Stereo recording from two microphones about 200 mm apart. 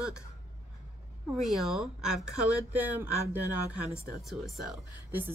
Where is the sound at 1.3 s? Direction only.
Centre (ahead or behind).